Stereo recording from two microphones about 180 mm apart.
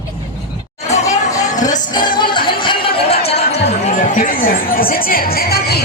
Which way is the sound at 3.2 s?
35° left (ahead or behind).